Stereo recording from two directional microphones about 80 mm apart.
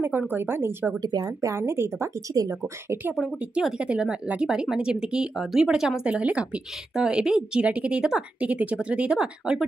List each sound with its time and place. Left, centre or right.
0.3 s a woman's voice: right
1.0 s speech: right
3.2 s speech: centre